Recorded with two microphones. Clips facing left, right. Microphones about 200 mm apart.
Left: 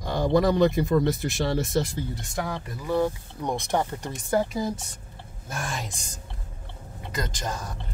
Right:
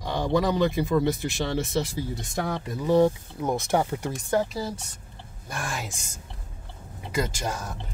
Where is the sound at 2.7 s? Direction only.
20° right (ahead or behind).